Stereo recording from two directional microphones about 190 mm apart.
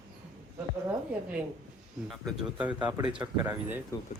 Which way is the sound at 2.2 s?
5° right (ahead or behind).